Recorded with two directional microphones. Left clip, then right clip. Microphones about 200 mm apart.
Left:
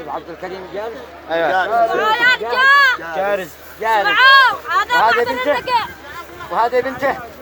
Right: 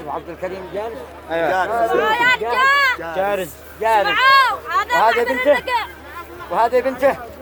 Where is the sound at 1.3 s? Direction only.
25° left (ahead or behind).